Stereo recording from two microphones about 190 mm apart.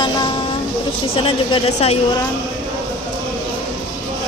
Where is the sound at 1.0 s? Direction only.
30° left (ahead or behind).